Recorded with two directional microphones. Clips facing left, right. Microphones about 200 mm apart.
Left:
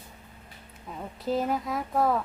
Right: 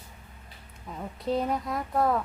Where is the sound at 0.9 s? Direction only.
Centre (ahead or behind).